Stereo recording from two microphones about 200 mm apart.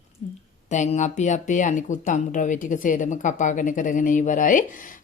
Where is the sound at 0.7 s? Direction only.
35° left (ahead or behind).